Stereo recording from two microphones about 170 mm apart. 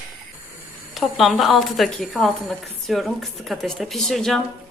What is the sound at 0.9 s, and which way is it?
A woman's voice, centre (ahead or behind).